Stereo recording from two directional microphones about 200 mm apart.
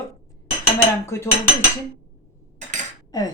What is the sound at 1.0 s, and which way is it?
Speech, 15° left (ahead or behind).